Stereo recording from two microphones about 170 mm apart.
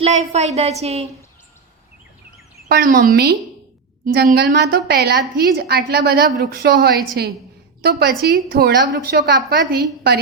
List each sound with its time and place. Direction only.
0.0 s a woman's voice: 40° right (ahead or behind)
2.6 s a woman's voice: 60° right (ahead or behind)